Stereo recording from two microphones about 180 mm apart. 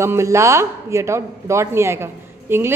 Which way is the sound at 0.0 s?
15° right (ahead or behind).